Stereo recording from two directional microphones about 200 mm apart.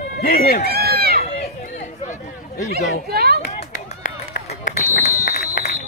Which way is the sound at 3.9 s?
35° left (ahead or behind).